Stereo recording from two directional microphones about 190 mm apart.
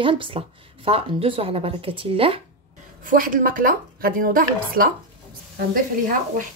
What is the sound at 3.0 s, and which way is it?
A woman's voice, 45° right (ahead or behind).